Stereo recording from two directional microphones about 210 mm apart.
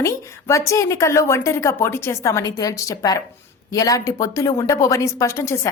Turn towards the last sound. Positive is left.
turn(degrees=15)  # may be behind; listen again after turning